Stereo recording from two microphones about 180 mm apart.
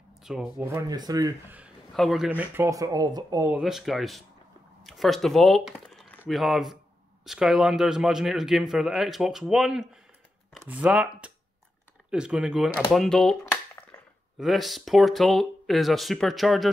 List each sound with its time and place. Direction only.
0.2 s a sound: centre (ahead or behind)
0.6 s speech: 15° right (ahead or behind)
1.5 s speech: 5° right (ahead or behind)
3.6 s a man's voice: centre (ahead or behind)
13.5 s a sound: 15° left (ahead or behind)
14.4 s a man's voice: centre (ahead or behind)